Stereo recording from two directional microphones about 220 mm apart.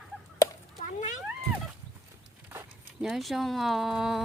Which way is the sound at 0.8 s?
35° left (ahead or behind).